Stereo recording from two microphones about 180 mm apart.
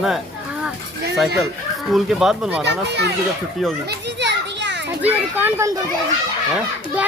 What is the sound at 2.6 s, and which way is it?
Speech, 70° right (ahead or behind).